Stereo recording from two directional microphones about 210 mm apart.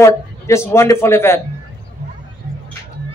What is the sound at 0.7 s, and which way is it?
Speech, 10° left (ahead or behind).